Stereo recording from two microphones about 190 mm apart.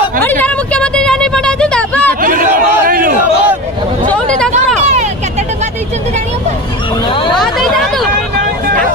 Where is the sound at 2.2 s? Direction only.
45° right (ahead or behind).